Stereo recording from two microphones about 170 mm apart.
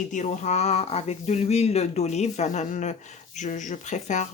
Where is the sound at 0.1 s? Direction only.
45° left (ahead or behind).